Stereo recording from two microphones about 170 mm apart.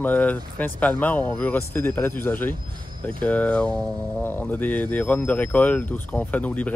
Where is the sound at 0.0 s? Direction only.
10° left (ahead or behind).